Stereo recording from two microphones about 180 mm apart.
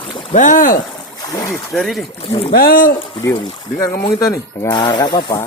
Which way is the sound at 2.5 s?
55° left (ahead or behind).